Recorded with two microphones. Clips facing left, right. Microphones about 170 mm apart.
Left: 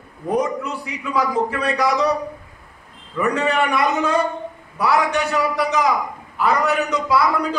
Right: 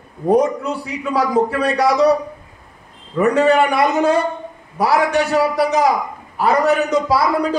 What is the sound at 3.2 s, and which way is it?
Speech, 35° right (ahead or behind).